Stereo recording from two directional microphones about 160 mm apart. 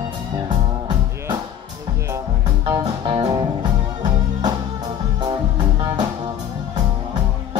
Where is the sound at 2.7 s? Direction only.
25° right (ahead or behind).